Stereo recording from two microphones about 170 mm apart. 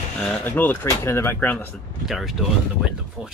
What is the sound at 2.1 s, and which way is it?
Speech, centre (ahead or behind).